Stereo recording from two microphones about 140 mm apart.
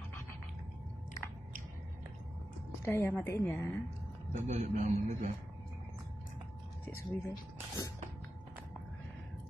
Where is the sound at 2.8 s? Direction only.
15° left (ahead or behind).